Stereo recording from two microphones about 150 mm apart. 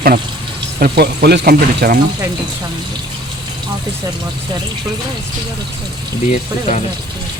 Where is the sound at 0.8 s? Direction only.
90° right.